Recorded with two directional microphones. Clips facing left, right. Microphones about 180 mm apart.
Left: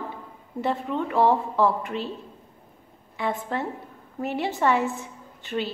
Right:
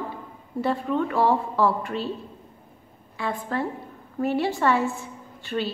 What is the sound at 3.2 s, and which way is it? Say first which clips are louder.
A woman's voice: even; 20° left (ahead or behind).